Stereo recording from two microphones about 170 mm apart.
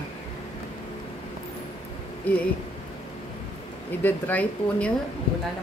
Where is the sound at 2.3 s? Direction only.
10° left (ahead or behind).